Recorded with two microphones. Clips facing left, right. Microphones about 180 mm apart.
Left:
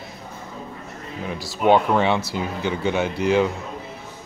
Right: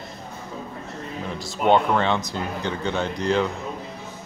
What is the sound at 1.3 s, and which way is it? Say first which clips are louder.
Speech: left 2 dB; 5° left (ahead or behind).